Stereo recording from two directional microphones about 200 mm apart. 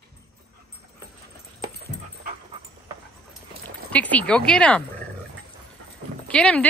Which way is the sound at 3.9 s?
5° left (ahead or behind).